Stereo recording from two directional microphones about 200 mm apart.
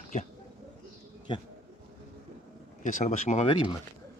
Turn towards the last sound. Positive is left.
turn(degrees=35)  # may be behind; listen again after turning